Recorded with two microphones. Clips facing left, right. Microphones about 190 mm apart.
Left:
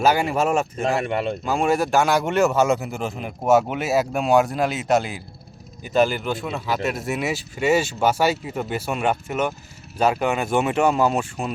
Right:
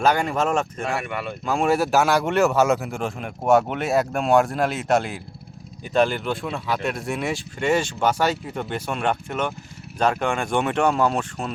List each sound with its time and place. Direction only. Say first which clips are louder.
0.0 s speech: left 1 dB; 5° left (ahead or behind)
0.9 s speech: left 5 dB; 25° left (ahead or behind)
1.5 s speech: right 2 dB; centre (ahead or behind)